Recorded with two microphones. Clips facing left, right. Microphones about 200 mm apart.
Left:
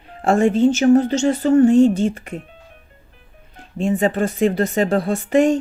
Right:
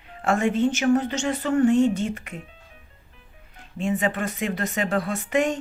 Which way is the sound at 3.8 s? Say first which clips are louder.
Left 6 dB; 35° left (ahead or behind).